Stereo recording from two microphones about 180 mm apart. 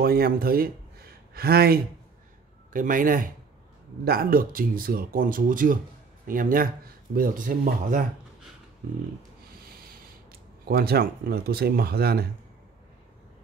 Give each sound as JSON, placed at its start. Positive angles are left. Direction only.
{"t": 0.0, "sound": "speech", "side_deg": -55}
{"t": 2.7, "sound": "speech", "side_deg": -50}
{"t": 9.7, "sound": "rub", "side_deg": -55}
{"t": 10.7, "sound": "speech", "side_deg": -55}